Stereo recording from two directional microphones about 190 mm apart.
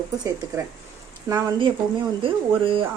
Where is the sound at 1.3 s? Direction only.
25° right (ahead or behind).